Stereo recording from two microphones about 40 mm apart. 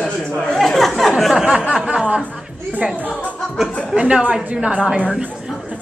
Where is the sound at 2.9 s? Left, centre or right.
Left.